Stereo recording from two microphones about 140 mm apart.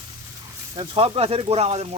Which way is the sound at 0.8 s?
40° right (ahead or behind).